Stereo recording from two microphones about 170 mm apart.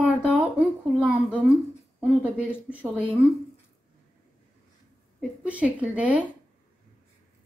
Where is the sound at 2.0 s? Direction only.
10° right (ahead or behind).